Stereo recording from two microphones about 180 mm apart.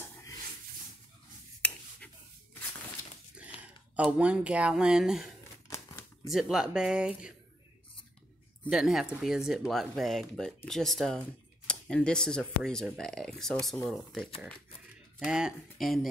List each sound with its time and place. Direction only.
1.6 s finger snapping: 5° left (ahead or behind)
3.3 s speech: 5° right (ahead or behind)
5.7 s crumpling: 15° left (ahead or behind)
6.3 s speech: centre (ahead or behind)
8.6 s speech: centre (ahead or behind)